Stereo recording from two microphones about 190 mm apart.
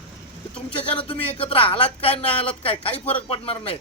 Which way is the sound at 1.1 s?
30° left (ahead or behind).